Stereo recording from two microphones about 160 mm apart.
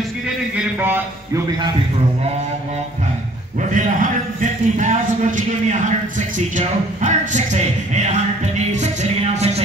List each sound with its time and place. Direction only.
0.6 s a man's voice: 10° right (ahead or behind)
3.7 s a sound: 50° right (ahead or behind)
8.7 s music: 45° right (ahead or behind)